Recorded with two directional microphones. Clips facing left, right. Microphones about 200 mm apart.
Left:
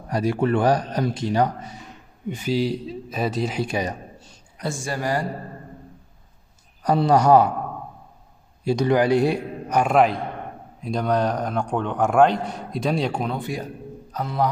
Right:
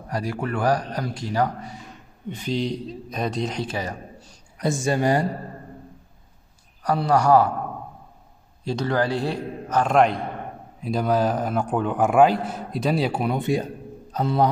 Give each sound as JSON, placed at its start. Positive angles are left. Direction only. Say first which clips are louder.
{"t": 0.1, "sound": "speech", "louder": "left 6 dB", "side_deg": 25}
{"t": 2.2, "sound": "speech", "louder": "left 3 dB", "side_deg": 10}
{"t": 4.6, "sound": "speech", "louder": "right 5 dB", "side_deg": -20}
{"t": 6.8, "sound": "speech", "louder": "left 3 dB", "side_deg": 20}
{"t": 8.6, "sound": "speech", "louder": "left 5 dB", "side_deg": 15}
{"t": 9.9, "sound": "a man's voice", "louder": "right 1 dB", "side_deg": 0}
{"t": 13.4, "sound": "speech", "louder": "right 6 dB", "side_deg": -25}